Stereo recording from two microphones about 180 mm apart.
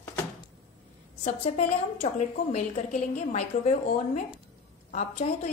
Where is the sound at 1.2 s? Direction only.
40° left (ahead or behind).